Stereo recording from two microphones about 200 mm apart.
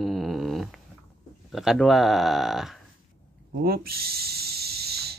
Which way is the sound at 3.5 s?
50° right (ahead or behind).